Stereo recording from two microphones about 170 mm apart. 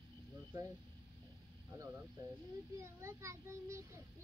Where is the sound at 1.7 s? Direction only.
15° right (ahead or behind).